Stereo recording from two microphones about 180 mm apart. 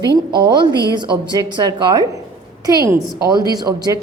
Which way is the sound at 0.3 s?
25° right (ahead or behind).